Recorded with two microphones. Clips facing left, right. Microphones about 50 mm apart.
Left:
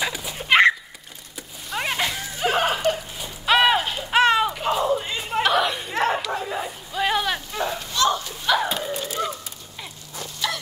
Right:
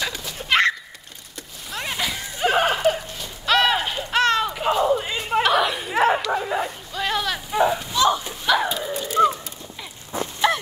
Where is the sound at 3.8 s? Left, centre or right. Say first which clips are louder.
Even; centre.